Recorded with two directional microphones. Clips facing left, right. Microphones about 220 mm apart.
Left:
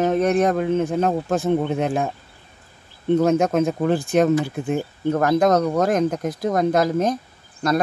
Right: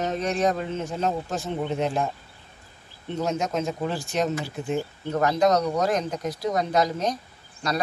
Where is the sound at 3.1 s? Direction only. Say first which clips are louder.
Left 10 dB; 55° left (ahead or behind).